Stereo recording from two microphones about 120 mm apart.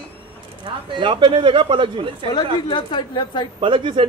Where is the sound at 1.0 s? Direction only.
45° right (ahead or behind).